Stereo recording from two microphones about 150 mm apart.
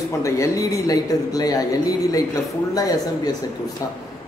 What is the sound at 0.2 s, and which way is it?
Speech, 20° left (ahead or behind).